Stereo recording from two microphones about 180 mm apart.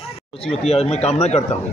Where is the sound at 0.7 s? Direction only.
35° left (ahead or behind).